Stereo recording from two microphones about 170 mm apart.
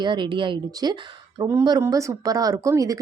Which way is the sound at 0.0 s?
25° right (ahead or behind).